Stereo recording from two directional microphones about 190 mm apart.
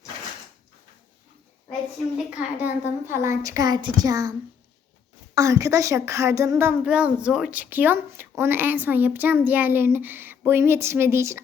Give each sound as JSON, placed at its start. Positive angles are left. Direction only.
{"t": 2.6, "sound": "a woman's voice", "side_deg": -10}